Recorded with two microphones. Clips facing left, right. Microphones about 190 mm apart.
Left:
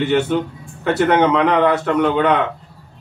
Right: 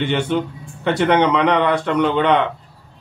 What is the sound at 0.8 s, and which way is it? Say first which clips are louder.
Speech: left 1 dB; 5° left (ahead or behind).